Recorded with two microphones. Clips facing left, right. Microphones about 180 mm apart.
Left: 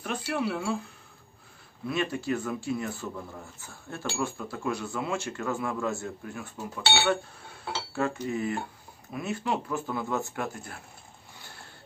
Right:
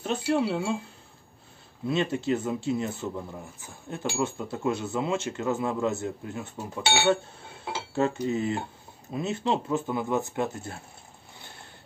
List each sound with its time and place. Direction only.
0.0 s speech: 25° right (ahead or behind)
1.9 s speech: 25° right (ahead or behind)